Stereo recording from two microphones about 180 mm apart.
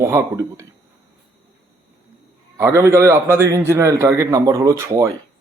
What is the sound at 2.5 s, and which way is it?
A man's voice, 15° right (ahead or behind).